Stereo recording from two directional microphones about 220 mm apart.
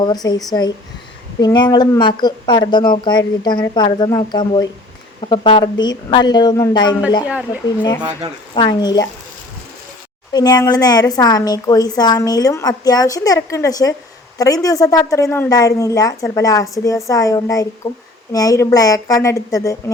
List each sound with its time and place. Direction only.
0.0 s a woman's voice: 20° left (ahead or behind)
8.5 s a woman's voice: 20° left (ahead or behind)
10.3 s a woman's voice: 20° left (ahead or behind)